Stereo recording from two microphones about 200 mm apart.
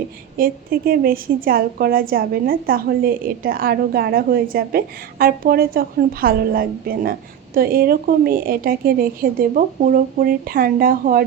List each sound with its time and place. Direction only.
0.3 s a woman's voice: 45° right (ahead or behind)